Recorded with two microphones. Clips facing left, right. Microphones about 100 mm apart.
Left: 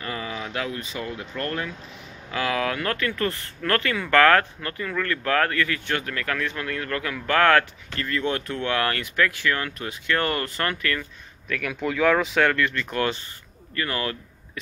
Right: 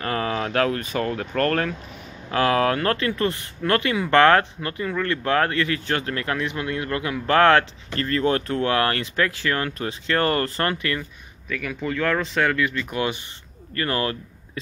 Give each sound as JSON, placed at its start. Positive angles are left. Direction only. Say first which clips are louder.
{"t": 0.0, "sound": "speech", "louder": "right 7 dB", "side_deg": -60}
{"t": 2.3, "sound": "speech", "louder": "right 6 dB", "side_deg": -40}
{"t": 7.9, "sound": "speech", "louder": "right 5 dB", "side_deg": -40}
{"t": 11.4, "sound": "speech", "louder": "even", "side_deg": 0}
{"t": 13.7, "sound": "speech", "louder": "right 3 dB", "side_deg": -30}